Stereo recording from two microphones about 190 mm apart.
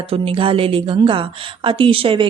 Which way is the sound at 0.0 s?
30° right (ahead or behind).